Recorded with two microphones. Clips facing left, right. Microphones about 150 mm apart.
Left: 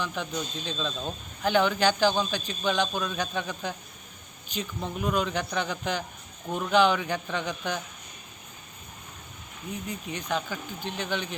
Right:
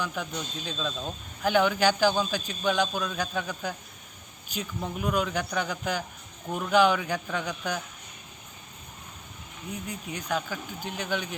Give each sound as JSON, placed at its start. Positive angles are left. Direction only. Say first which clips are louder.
{"t": 0.0, "sound": "speech", "louder": "left 1 dB", "side_deg": -5}
{"t": 9.9, "sound": "speech", "louder": "even", "side_deg": -5}